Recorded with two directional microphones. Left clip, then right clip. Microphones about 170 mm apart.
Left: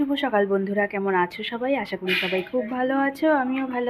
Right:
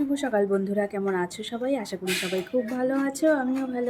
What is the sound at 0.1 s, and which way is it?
A woman's voice, 10° right (ahead or behind).